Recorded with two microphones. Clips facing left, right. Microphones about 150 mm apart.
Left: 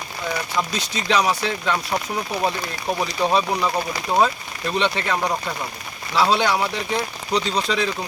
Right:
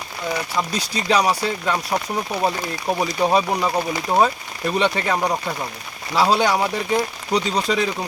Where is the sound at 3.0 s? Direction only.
10° right (ahead or behind).